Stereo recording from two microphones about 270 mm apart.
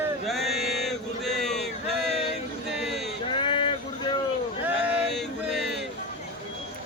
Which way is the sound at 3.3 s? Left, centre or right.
Centre.